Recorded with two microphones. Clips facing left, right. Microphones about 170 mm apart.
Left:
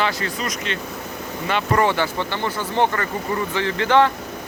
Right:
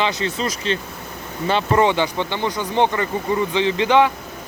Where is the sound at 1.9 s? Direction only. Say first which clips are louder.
Right 2 dB; 20° right (ahead or behind).